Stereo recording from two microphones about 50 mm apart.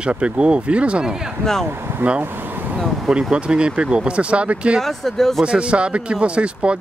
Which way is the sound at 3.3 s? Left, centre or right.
Centre.